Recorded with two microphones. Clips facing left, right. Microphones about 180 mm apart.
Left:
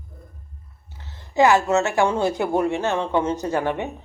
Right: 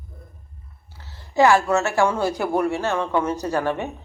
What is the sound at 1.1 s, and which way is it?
Speech, 20° left (ahead or behind).